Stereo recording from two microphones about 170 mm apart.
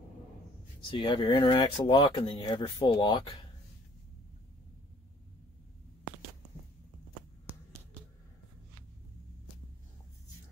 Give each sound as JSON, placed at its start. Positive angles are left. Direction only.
{"t": 0.9, "sound": "speech", "side_deg": 30}